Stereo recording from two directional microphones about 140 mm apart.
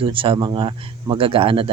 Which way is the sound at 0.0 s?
40° right (ahead or behind).